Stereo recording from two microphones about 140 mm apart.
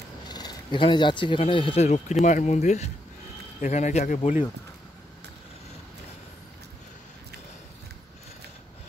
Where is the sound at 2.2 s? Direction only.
60° left (ahead or behind).